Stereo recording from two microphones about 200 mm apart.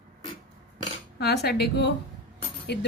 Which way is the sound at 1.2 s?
55° left (ahead or behind).